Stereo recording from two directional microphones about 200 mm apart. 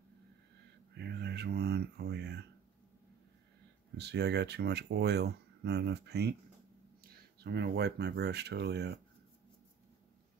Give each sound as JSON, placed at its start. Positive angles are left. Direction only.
{"t": 0.9, "sound": "speech", "side_deg": -55}
{"t": 3.9, "sound": "speech", "side_deg": -55}